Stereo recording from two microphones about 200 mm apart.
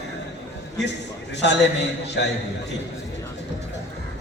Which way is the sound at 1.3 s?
60° left (ahead or behind).